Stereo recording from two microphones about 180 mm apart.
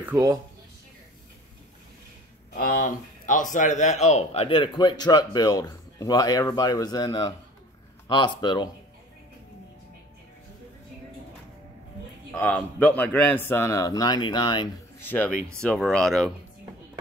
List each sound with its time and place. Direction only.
0.0 s speech: 20° right (ahead or behind)
2.5 s speech: 50° left (ahead or behind); by 8.6 s 25° left (ahead or behind)
12.3 s a man's voice: 10° left (ahead or behind); by 14.7 s 25° left (ahead or behind)
15.0 s speech: 10° left (ahead or behind)